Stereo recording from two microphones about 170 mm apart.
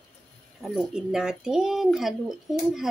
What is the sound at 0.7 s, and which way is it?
Speech, centre (ahead or behind).